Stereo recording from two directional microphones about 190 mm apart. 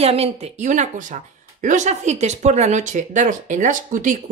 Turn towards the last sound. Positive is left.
turn(degrees=-40)  # may be behind; listen again after turning